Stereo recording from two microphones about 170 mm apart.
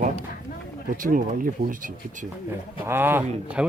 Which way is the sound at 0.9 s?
55° right (ahead or behind).